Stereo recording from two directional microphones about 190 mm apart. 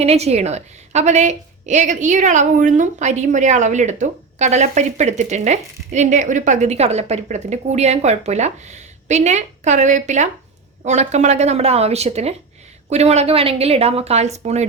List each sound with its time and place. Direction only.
0.0 s a woman's voice: 35° right (ahead or behind)